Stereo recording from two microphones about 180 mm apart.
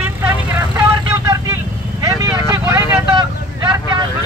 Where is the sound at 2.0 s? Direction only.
15° right (ahead or behind).